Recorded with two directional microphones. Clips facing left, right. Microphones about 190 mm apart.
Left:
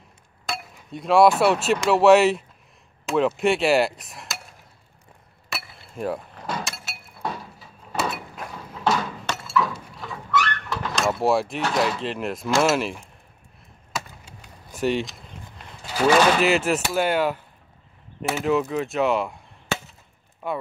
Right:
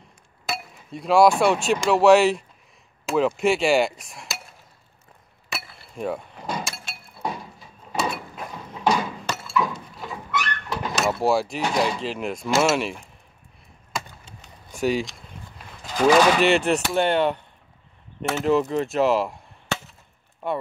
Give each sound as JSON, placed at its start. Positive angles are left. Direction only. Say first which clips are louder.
{"t": 0.5, "sound": "speech", "louder": "right 1 dB", "side_deg": 0}
{"t": 5.5, "sound": "a sound", "louder": "even", "side_deg": 0}
{"t": 8.9, "sound": "chink", "louder": "right 1 dB", "side_deg": -5}
{"t": 9.5, "sound": "a sound", "louder": "left 1 dB", "side_deg": -20}
{"t": 11.0, "sound": "speech", "louder": "even", "side_deg": 0}
{"t": 13.9, "sound": "chop", "louder": "even", "side_deg": 5}
{"t": 15.8, "sound": "speech", "louder": "right 1 dB", "side_deg": 5}